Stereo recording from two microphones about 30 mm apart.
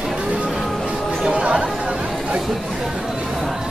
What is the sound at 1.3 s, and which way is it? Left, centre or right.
Chatter, right.